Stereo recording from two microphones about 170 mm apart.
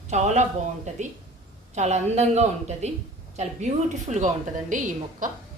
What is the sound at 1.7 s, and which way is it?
A woman's voice, 40° right (ahead or behind).